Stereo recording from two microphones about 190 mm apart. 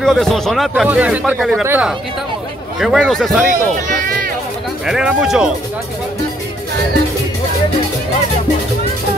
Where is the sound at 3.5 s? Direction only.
45° right (ahead or behind).